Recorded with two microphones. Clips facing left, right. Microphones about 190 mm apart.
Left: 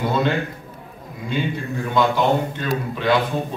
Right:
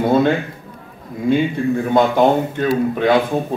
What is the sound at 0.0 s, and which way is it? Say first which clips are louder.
Speech: right 6 dB; 50° right (ahead or behind).